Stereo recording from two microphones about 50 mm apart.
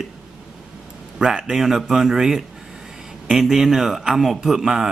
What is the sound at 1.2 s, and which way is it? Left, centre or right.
Speech, centre.